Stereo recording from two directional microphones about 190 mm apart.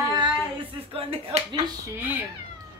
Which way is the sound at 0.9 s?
30° right (ahead or behind).